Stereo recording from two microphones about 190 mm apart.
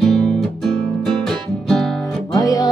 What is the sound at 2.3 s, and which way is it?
Music, 20° left (ahead or behind).